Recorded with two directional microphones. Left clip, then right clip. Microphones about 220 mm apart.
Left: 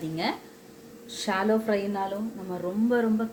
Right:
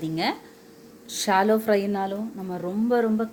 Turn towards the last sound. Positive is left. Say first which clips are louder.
# right 3 dB
turn(degrees=-40)  # may be behind; listen again after turning